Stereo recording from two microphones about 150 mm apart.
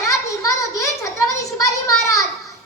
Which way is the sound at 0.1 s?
20° left (ahead or behind).